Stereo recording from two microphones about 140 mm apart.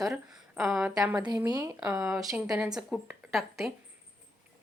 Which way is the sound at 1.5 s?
25° right (ahead or behind).